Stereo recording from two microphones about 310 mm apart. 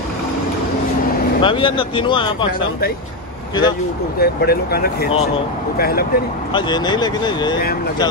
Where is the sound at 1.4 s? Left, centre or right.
Centre.